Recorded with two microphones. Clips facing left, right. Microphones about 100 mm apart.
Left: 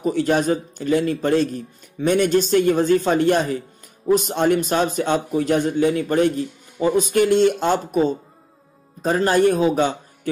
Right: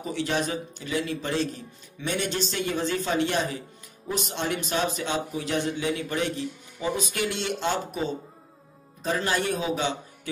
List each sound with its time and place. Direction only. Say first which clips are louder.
0.0 s a man's voice: left 9 dB; 45° left (ahead or behind)